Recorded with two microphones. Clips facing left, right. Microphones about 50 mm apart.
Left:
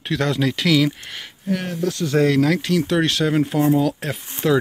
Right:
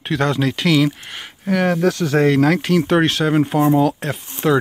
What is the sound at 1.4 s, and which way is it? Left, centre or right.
Speech, right.